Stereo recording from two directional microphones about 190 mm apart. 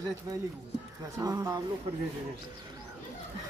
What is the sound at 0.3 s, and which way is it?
Speech, 20° right (ahead or behind).